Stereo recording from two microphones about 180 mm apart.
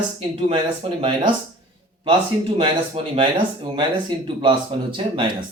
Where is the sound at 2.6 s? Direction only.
30° right (ahead or behind).